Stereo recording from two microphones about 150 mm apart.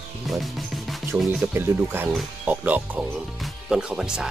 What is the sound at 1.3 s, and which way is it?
Speech, 15° right (ahead or behind).